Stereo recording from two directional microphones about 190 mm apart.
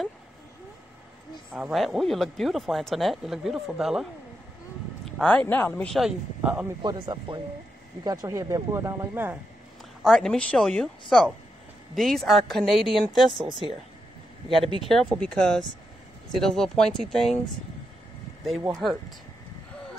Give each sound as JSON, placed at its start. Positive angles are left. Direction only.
{"t": 1.5, "sound": "speech", "side_deg": -5}
{"t": 5.2, "sound": "speech", "side_deg": 5}
{"t": 6.8, "sound": "speech", "side_deg": -20}
{"t": 10.0, "sound": "speech", "side_deg": 0}
{"t": 13.5, "sound": "speech", "side_deg": -25}
{"t": 14.9, "sound": "speech", "side_deg": 5}
{"t": 18.8, "sound": "speech", "side_deg": 0}